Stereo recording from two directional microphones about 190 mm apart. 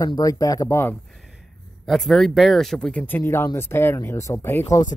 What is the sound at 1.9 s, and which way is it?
A man's voice, centre (ahead or behind).